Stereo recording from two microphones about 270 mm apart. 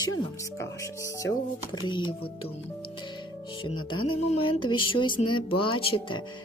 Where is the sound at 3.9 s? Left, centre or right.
Centre.